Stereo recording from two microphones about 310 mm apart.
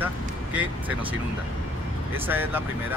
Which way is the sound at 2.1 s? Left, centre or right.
Centre.